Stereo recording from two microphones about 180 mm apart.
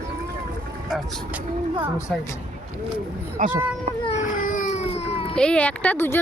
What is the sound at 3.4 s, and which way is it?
Speech, 45° right (ahead or behind).